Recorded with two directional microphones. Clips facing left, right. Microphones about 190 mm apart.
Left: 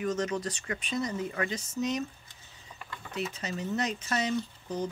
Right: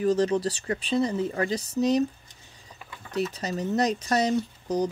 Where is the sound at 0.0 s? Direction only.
35° right (ahead or behind).